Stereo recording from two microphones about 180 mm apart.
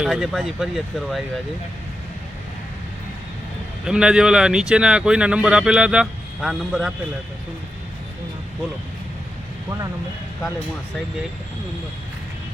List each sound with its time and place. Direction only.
0.0 s speech: 5° right (ahead or behind)
3.8 s speech: 5° right (ahead or behind)
9.6 s speech: 20° right (ahead or behind)